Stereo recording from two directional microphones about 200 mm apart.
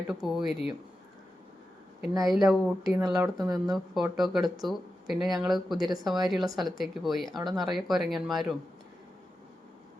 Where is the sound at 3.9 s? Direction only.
Centre (ahead or behind).